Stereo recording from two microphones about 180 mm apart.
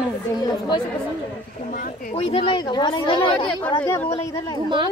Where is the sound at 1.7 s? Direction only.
50° left (ahead or behind).